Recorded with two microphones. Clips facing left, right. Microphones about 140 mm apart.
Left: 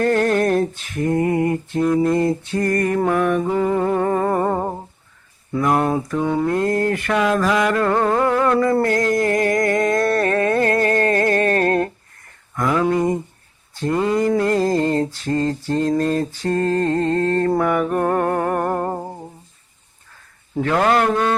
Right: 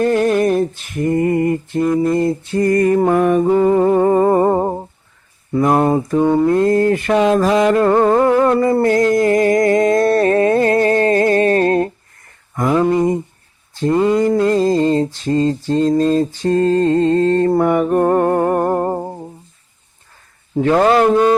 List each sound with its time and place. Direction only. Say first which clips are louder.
0.0 s a sound: right 3 dB; 10° right (ahead or behind)
2.6 s mantra: right 6 dB; 20° right (ahead or behind)
3.1 s mantra: right 5 dB; 30° right (ahead or behind)
8.8 s a sound: right 5 dB; 25° right (ahead or behind)
14.3 s mantra: right 4 dB; 20° right (ahead or behind)
17.5 s music: right 4 dB; 15° right (ahead or behind)
20.6 s mantra: right 5 dB; 20° right (ahead or behind)